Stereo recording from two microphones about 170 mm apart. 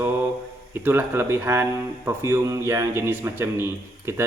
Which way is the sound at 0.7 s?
15° right (ahead or behind).